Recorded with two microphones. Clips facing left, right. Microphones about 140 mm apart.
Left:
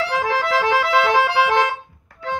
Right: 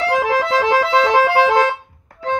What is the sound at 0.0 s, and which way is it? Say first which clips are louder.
Music: right 4 dB; 25° right (ahead or behind).